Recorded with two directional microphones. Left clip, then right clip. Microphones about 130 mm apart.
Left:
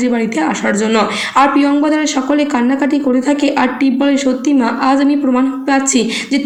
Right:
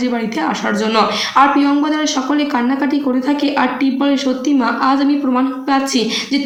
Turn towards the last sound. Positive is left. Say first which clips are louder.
# left 2 dB
turn(degrees=25)  # may be behind; listen again after turning